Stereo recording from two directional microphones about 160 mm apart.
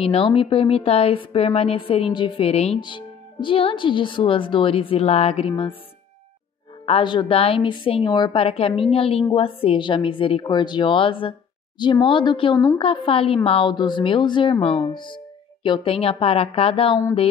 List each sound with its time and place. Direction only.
0.0 s a woman's voice: 35° left (ahead or behind)
6.9 s a woman's voice: 30° left (ahead or behind)